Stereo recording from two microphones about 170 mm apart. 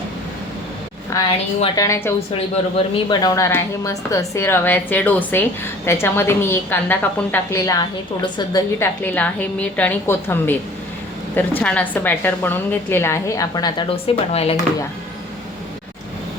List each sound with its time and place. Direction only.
1.7 s a woman's voice: 20° left (ahead or behind)
8.8 s a woman's voice: 10° left (ahead or behind); by 14.6 s 35° left (ahead or behind)